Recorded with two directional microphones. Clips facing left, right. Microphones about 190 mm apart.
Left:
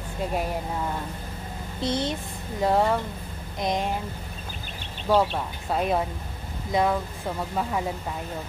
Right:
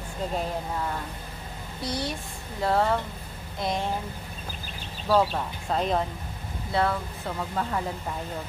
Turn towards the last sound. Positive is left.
turn(degrees=15)  # may be behind; listen again after turning